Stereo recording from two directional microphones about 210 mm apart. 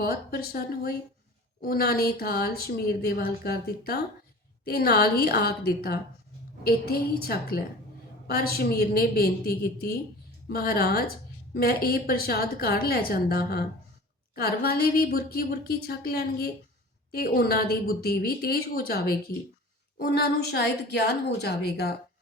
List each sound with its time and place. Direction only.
0.0 s speech: 45° left (ahead or behind)